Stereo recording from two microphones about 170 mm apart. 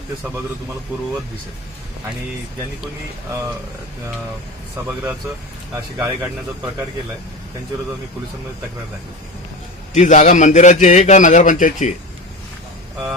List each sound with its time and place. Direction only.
5.7 s speech: 15° right (ahead or behind)
9.9 s a man's voice: 45° left (ahead or behind)